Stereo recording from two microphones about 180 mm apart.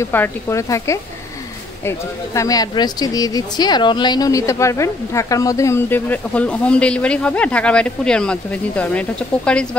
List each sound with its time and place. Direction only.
0.0 s speech: 15° left (ahead or behind)